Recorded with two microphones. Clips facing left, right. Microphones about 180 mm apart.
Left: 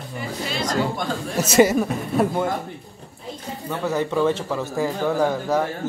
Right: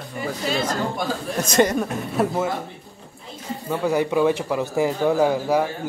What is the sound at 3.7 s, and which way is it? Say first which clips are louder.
A man's voice: right 3 dB; 10° right (ahead or behind).